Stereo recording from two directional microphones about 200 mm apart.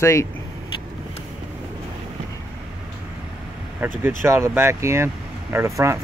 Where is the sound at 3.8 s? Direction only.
10° right (ahead or behind).